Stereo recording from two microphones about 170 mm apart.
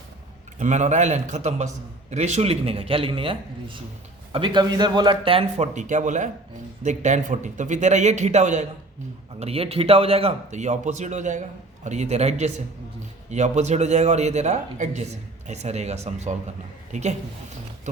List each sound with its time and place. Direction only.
0.6 s a man's voice: 45° right (ahead or behind)